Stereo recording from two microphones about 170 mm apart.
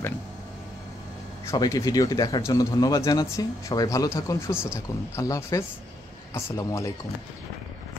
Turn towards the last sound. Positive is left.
turn(degrees=15)  # may be behind; listen again after turning